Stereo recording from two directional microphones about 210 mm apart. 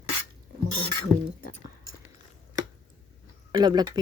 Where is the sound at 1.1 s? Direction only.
15° right (ahead or behind).